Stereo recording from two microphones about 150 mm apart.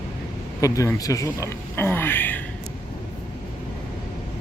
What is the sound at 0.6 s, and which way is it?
Speech, 20° left (ahead or behind).